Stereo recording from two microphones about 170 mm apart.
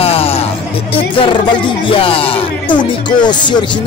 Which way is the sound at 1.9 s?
30° left (ahead or behind).